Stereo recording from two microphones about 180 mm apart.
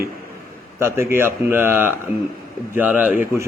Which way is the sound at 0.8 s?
15° right (ahead or behind).